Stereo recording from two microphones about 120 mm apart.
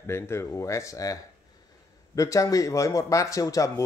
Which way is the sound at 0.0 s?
20° left (ahead or behind).